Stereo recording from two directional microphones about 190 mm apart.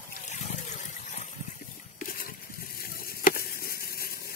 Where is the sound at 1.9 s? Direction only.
50° left (ahead or behind).